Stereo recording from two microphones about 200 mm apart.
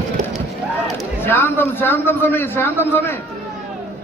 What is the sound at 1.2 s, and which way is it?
A man's voice, 10° left (ahead or behind).